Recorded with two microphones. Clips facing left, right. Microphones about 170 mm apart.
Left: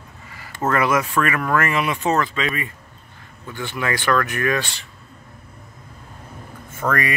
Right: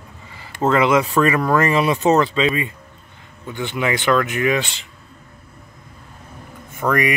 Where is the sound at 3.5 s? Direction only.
20° right (ahead or behind).